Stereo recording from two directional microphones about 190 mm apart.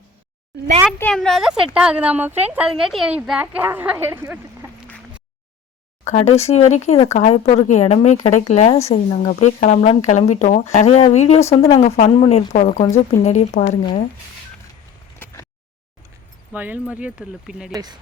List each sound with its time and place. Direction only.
0.9 s a woman's voice: 5° left (ahead or behind); by 4.4 s 10° right (ahead or behind)
6.3 s speech: 35° left (ahead or behind)
15.2 s a sound: 15° left (ahead or behind)
16.5 s speech: 10° right (ahead or behind)
17.7 s speech: 20° right (ahead or behind)